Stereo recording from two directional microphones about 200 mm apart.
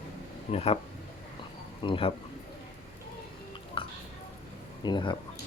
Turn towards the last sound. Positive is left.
turn(degrees=25)  # may be behind; listen again after turning